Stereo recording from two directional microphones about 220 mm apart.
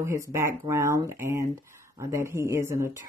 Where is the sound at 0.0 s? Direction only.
15° right (ahead or behind).